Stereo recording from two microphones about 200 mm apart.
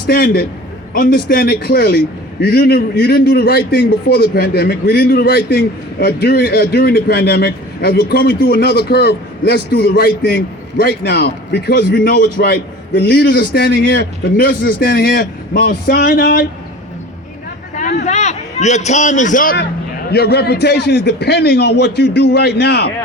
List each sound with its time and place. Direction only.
0.1 s a man's voice: 45° left (ahead or behind)
18.0 s a man's voice: 35° left (ahead or behind)
20.1 s a man's voice: 50° left (ahead or behind)